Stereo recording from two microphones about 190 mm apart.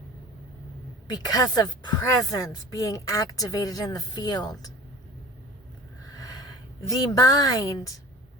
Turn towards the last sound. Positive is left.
turn(degrees=15)  # may be behind; listen again after turning